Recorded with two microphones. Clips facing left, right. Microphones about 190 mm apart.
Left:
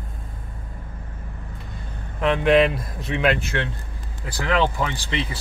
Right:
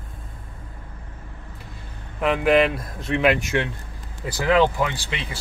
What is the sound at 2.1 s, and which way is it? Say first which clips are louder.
Speech: left 1 dB; 5° right (ahead or behind).